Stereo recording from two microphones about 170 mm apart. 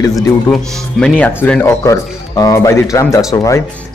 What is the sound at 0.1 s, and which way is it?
Speech, 5° left (ahead or behind).